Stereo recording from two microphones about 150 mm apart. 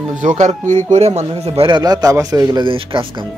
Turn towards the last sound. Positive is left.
turn(degrees=-35)  # may be behind; listen again after turning